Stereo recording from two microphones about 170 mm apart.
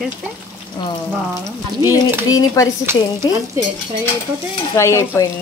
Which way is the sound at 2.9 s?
15° right (ahead or behind).